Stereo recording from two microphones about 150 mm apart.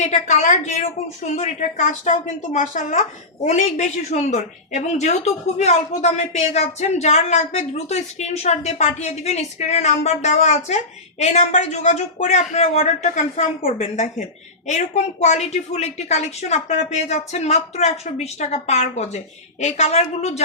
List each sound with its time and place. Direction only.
0.0 s a woman's voice: 50° left (ahead or behind)